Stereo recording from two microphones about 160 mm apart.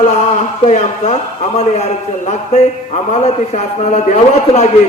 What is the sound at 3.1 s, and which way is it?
A man's voice, 45° left (ahead or behind).